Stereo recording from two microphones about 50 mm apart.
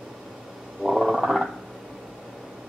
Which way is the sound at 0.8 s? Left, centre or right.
Centre.